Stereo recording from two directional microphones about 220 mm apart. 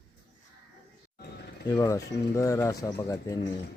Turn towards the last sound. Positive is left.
turn(degrees=15)  # may be behind; listen again after turning